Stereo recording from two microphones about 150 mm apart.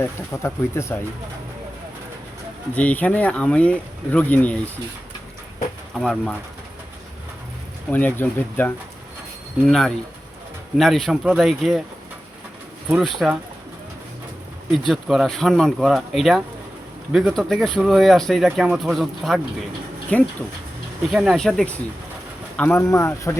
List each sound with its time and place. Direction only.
0.0 s speech: 15° left (ahead or behind)
2.7 s speech: 10° left (ahead or behind)
5.9 s speech: 5° left (ahead or behind)
7.9 s speech: 10° left (ahead or behind)
12.9 s speech: centre (ahead or behind)
14.7 s speech: centre (ahead or behind)
21.1 s speech: centre (ahead or behind); by 23.3 s 20° left (ahead or behind)